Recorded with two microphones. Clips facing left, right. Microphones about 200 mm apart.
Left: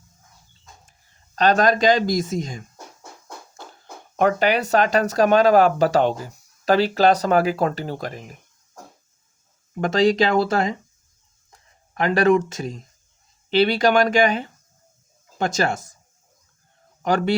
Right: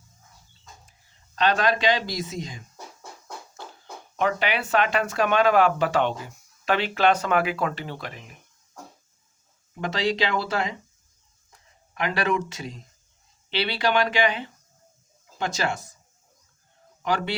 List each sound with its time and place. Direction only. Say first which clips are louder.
1.4 s speech: left 5 dB; 45° left (ahead or behind)
4.2 s speech: left 6 dB; 45° left (ahead or behind)
9.7 s speech: left 8 dB; 45° left (ahead or behind)
11.9 s speech: left 8 dB; 45° left (ahead or behind)
17.0 s speech: left 6 dB; 45° left (ahead or behind)